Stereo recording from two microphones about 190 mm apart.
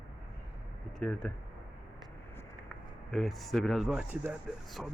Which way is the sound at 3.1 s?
Centre (ahead or behind).